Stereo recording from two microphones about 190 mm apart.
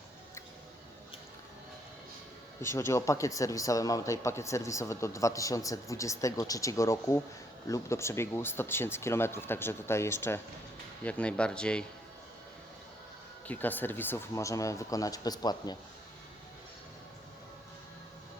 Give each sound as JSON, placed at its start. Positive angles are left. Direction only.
{"t": 2.6, "sound": "speech", "side_deg": 15}
{"t": 13.5, "sound": "speech", "side_deg": 10}